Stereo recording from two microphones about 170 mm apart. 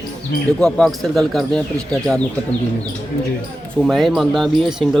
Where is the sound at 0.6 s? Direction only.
5° left (ahead or behind).